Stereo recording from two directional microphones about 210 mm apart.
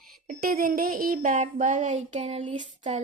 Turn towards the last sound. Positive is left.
turn(degrees=-30)  # may be behind; listen again after turning